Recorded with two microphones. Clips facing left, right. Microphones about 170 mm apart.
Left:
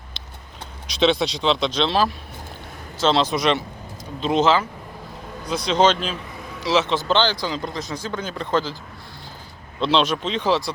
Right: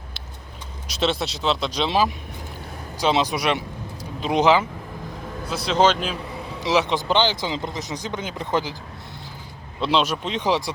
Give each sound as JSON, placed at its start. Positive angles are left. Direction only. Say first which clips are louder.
{"t": 0.9, "sound": "speech", "louder": "left 5 dB", "side_deg": -5}
{"t": 9.8, "sound": "speech", "louder": "left 2 dB", "side_deg": -10}